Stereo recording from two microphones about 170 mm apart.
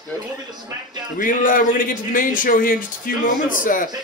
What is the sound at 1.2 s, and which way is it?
Speech, 50° left (ahead or behind).